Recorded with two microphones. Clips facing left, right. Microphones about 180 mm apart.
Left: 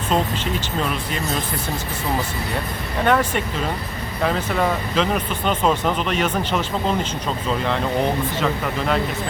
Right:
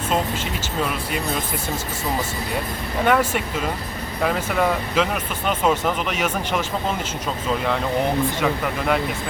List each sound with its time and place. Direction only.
3.0 s speech: 5° right (ahead or behind)
8.4 s speech: 10° right (ahead or behind)